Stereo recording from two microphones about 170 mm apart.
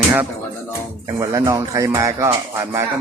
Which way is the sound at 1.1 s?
25° right (ahead or behind).